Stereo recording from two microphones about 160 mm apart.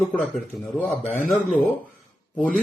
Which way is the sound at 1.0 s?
45° left (ahead or behind).